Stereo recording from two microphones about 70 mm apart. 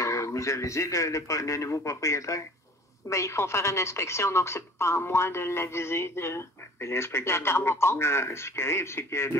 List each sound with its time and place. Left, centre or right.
0.0 s a woman's voice: left